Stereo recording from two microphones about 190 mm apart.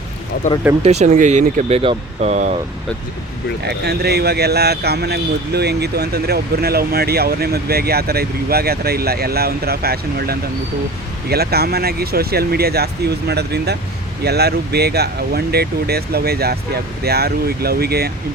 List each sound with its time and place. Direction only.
0.8 s speech: 35° right (ahead or behind)
3.6 s speech: 60° right (ahead or behind)